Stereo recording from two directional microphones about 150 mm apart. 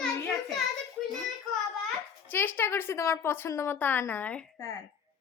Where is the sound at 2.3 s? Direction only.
15° left (ahead or behind).